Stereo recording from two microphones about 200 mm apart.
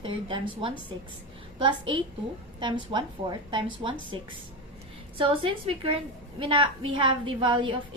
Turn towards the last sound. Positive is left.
turn(degrees=-25)  # may be behind; listen again after turning